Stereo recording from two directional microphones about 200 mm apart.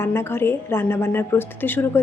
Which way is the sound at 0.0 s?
10° left (ahead or behind).